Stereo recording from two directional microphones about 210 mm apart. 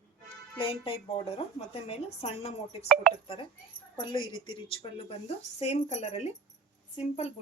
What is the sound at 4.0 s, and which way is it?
A woman's voice, 20° left (ahead or behind).